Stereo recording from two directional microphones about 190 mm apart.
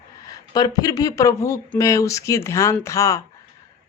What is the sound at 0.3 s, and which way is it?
Speech, 20° left (ahead or behind).